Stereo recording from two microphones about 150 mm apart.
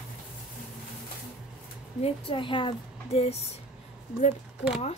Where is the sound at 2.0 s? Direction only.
35° left (ahead or behind).